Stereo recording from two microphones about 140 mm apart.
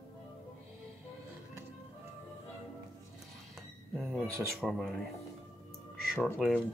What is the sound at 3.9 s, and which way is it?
Speech, centre (ahead or behind).